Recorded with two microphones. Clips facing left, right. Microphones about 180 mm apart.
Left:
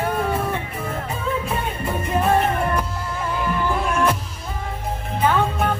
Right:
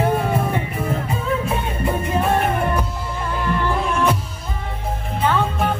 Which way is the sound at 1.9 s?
Centre (ahead or behind).